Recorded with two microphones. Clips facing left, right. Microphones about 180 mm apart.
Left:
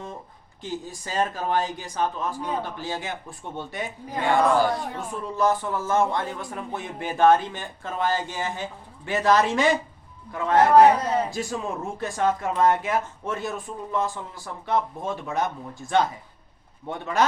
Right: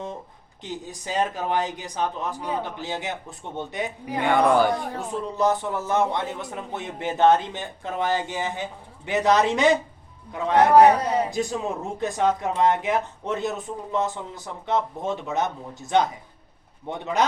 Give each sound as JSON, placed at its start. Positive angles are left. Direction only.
{"t": 0.6, "sound": "a man's voice", "side_deg": -20}